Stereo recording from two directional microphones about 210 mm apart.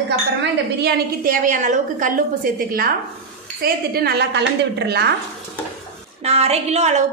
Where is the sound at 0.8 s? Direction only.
40° right (ahead or behind).